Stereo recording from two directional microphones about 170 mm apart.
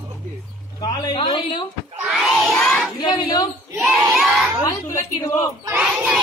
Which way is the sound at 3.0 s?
25° left (ahead or behind).